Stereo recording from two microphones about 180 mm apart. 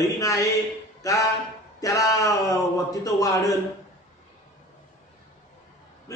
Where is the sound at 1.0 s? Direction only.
20° left (ahead or behind).